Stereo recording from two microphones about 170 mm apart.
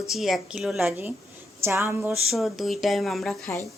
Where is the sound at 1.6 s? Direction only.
15° right (ahead or behind).